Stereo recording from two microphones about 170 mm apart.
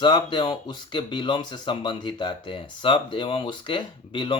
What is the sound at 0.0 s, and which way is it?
Speech, 25° left (ahead or behind).